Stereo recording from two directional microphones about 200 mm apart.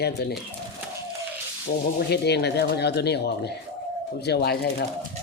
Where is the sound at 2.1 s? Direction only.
55° left (ahead or behind).